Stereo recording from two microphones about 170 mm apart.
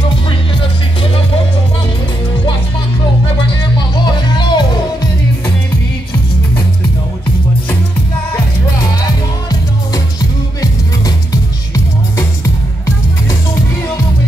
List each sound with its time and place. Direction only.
3.7 s music: 25° left (ahead or behind)